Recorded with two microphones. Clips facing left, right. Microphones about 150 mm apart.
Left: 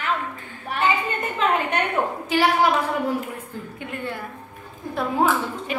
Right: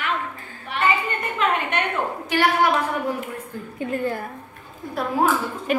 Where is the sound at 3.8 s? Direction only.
40° right (ahead or behind).